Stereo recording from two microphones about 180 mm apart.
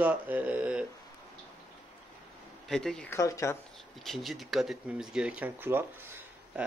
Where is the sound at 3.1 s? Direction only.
15° left (ahead or behind).